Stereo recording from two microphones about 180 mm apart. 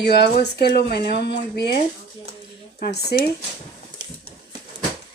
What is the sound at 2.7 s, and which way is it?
Speech, 60° left (ahead or behind).